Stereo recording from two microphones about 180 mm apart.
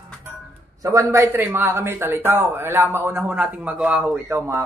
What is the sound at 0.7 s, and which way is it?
Speech, 15° right (ahead or behind).